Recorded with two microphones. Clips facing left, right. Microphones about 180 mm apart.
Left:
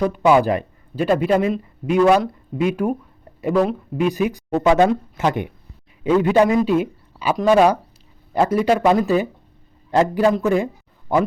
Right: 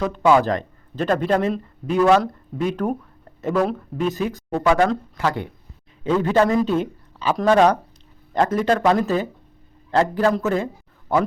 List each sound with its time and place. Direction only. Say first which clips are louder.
0.1 s speech: left 1 dB; 10° left (ahead or behind)
4.1 s speech: left 4 dB; 15° left (ahead or behind)